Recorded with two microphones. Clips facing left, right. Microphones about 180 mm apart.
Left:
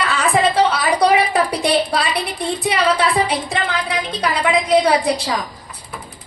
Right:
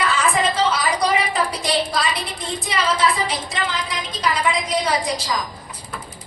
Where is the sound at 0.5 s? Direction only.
60° left (ahead or behind).